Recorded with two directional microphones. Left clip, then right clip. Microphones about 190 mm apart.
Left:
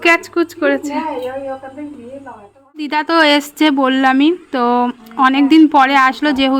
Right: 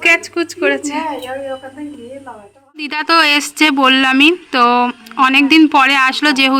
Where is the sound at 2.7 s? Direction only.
20° left (ahead or behind).